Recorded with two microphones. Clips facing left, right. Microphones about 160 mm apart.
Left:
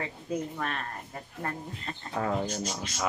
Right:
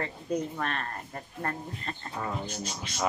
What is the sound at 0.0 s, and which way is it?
Speech, 5° left (ahead or behind).